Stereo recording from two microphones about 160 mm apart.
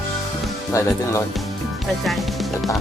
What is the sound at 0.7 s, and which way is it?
Speech, 20° left (ahead or behind).